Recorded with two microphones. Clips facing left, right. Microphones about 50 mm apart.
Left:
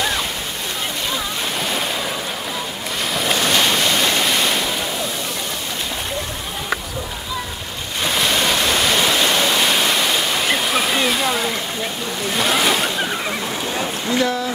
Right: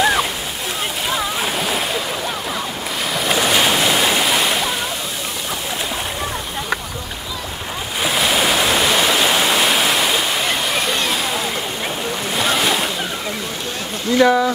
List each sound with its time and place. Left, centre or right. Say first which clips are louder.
0.0 s boat: right 5 dB; centre
1.1 s a sound: right 3 dB; centre
3.2 s waves: right 2 dB; centre
8.0 s waterfall: right 1 dB; centre
12.4 s boat: left 1 dB; centre
14.2 s a sound: right 10 dB; centre